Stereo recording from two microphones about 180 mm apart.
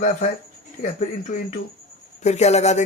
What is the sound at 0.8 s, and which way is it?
A man's voice, 45° left (ahead or behind).